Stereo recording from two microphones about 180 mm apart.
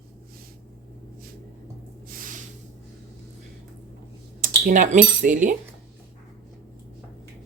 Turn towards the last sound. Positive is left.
turn(degrees=-45)  # may be behind; listen again after turning